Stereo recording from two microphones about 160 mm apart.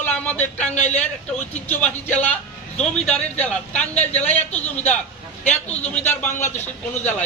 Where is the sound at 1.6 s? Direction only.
10° left (ahead or behind).